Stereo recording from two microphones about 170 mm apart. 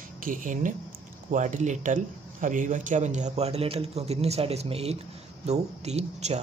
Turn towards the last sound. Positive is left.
turn(degrees=-40)  # may be behind; listen again after turning